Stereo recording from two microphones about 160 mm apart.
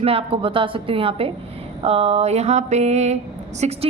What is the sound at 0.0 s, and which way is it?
A woman's voice, 35° right (ahead or behind).